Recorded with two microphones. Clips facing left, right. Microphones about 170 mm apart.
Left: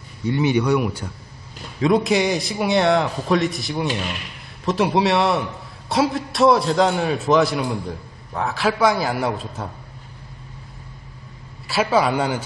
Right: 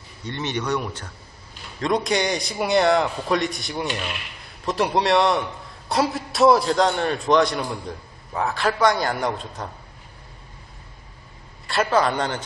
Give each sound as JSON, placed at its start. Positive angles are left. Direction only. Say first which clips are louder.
{"t": 0.2, "sound": "a man's voice", "louder": "left 9 dB", "side_deg": 10}
{"t": 11.6, "sound": "speech", "louder": "left 2 dB", "side_deg": 5}